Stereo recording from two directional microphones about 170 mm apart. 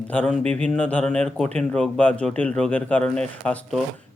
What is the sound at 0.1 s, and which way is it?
Speech, 5° left (ahead or behind).